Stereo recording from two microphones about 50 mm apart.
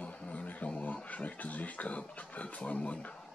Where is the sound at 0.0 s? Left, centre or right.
Left.